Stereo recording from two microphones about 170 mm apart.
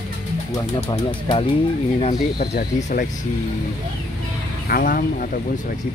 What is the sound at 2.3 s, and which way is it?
Speech, 70° left (ahead or behind).